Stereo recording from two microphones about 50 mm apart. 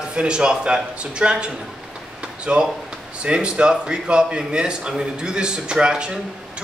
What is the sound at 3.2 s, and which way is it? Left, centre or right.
A man's voice, centre.